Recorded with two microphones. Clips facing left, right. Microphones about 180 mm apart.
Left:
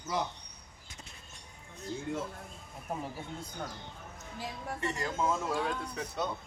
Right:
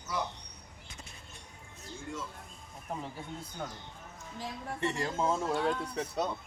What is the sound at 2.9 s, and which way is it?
Speech, 10° left (ahead or behind).